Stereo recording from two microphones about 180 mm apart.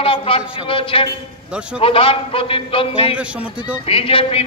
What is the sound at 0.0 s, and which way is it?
A man's voice, 30° left (ahead or behind).